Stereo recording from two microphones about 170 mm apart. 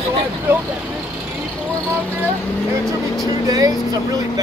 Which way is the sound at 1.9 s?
10° right (ahead or behind).